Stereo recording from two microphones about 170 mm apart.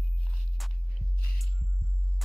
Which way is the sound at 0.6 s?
Centre (ahead or behind).